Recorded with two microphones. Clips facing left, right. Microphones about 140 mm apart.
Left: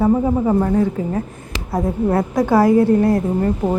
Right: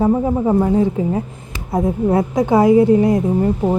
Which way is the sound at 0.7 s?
15° right (ahead or behind).